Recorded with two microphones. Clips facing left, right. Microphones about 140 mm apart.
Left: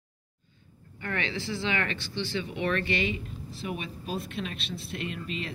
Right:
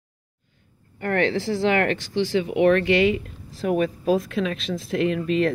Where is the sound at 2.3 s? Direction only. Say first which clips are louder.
Right 11 dB; 90° right.